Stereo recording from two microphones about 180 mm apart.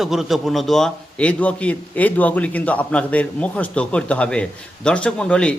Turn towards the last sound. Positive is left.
turn(degrees=5)  # may be behind; listen again after turning